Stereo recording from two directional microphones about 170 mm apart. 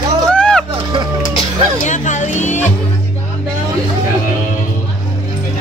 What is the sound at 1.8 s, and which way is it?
Music, 45° left (ahead or behind).